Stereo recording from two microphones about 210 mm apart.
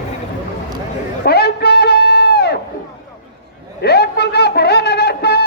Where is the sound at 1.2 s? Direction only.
50° left (ahead or behind).